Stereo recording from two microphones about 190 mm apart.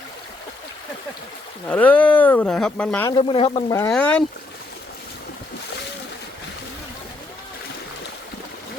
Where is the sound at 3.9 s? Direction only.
5° left (ahead or behind).